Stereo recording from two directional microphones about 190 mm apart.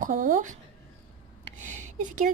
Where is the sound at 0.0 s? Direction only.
45° right (ahead or behind).